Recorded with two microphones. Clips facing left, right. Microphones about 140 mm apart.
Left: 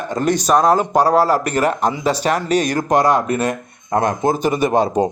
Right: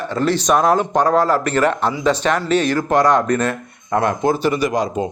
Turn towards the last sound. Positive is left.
turn(degrees=35)  # may be behind; listen again after turning